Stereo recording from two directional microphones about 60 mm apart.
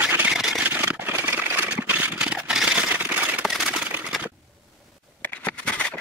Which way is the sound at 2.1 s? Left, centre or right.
Centre.